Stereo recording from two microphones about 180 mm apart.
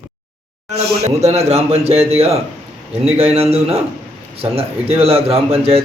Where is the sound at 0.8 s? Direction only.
35° right (ahead or behind).